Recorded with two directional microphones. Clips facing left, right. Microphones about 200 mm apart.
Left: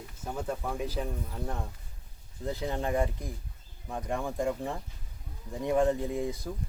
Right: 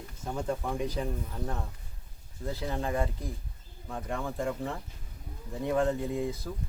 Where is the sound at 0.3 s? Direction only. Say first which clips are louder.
Right 2 dB; 5° left (ahead or behind).